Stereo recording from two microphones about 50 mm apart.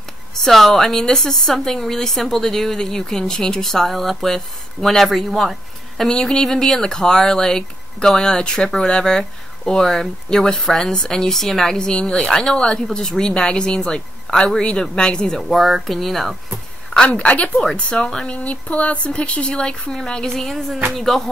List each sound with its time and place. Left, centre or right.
0.3 s speech: centre
6.0 s speech: centre
15.4 s speech: centre
17.1 s speech: left; by 21.2 s centre